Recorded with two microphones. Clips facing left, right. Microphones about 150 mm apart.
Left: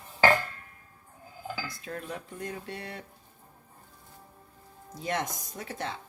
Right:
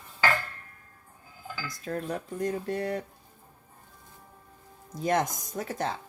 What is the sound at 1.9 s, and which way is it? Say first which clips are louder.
Speech: right 9 dB; 45° right (ahead or behind).